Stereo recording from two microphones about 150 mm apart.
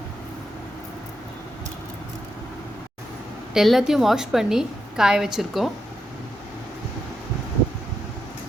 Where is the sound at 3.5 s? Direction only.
Centre (ahead or behind).